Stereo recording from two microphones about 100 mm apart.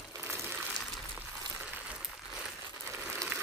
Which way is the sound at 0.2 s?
25° right (ahead or behind).